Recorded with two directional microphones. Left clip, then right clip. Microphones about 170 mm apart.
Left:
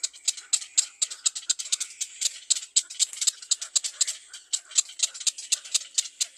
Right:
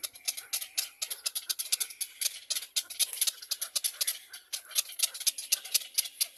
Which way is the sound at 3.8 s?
30° right (ahead or behind).